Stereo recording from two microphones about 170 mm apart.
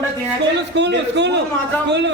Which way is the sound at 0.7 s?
90° right.